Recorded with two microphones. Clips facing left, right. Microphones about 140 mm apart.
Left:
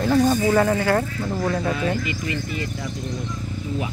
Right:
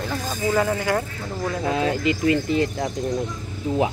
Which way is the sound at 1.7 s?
90° right.